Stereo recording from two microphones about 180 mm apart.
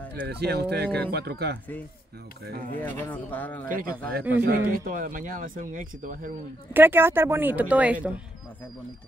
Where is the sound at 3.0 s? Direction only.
10° left (ahead or behind).